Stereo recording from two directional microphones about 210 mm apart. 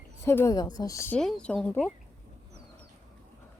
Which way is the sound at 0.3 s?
15° left (ahead or behind).